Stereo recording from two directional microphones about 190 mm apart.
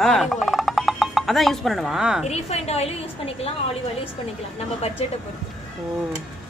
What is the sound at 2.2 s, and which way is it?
Speech, 35° left (ahead or behind).